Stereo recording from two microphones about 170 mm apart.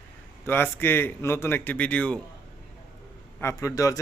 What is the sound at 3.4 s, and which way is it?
Speech, 15° left (ahead or behind).